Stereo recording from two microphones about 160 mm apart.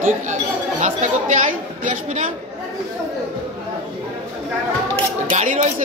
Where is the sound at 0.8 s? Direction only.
50° right (ahead or behind).